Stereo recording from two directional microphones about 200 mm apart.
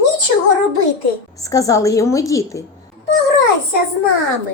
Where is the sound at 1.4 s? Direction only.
15° left (ahead or behind).